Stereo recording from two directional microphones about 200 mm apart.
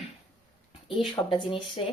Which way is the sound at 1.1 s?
25° left (ahead or behind).